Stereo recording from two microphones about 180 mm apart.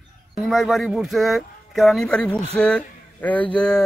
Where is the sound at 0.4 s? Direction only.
Centre (ahead or behind).